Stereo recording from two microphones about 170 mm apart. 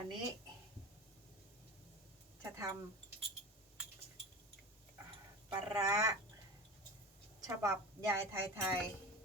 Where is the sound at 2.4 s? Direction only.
15° right (ahead or behind).